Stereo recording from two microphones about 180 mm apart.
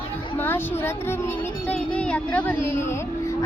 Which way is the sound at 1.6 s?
5° left (ahead or behind).